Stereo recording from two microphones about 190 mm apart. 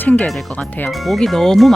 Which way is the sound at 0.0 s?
10° left (ahead or behind).